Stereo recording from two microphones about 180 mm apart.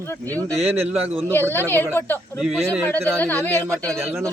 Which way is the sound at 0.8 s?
10° right (ahead or behind).